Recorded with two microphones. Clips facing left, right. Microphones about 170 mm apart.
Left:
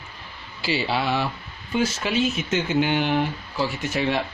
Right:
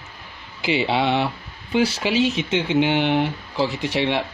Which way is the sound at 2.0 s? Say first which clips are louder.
Right 3 dB; 80° right.